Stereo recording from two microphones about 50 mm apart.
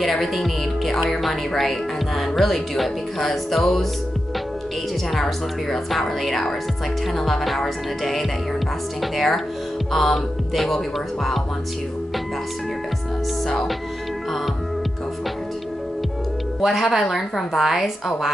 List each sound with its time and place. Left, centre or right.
0.0 s speech: centre
5.1 s speech: centre
16.6 s speech: centre